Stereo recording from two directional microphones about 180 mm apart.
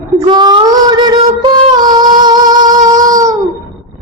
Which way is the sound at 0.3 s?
25° right (ahead or behind).